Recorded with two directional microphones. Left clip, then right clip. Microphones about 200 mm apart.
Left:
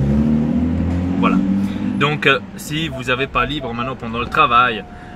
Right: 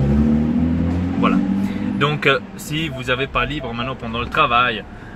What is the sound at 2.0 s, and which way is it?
Speech, 15° left (ahead or behind).